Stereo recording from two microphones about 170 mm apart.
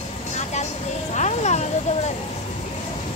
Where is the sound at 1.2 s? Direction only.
40° left (ahead or behind).